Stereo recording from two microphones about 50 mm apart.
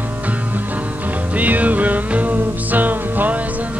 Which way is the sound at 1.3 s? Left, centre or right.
Right.